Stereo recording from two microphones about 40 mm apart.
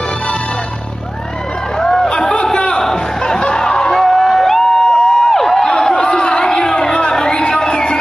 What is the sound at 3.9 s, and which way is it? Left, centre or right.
Music, centre.